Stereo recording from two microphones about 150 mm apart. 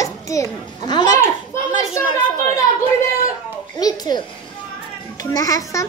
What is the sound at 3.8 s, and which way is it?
Speech, 25° left (ahead or behind).